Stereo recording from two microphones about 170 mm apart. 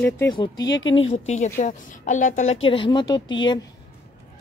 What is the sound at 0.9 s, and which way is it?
A woman's voice, 40° left (ahead or behind).